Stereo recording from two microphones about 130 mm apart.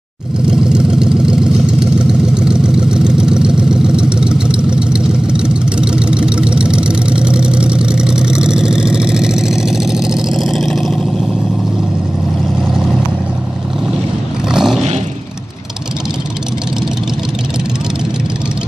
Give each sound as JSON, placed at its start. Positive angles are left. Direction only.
{"t": 0.5, "sound": "vehicle", "side_deg": -5}
{"t": 14.5, "sound": "vehicle", "side_deg": -5}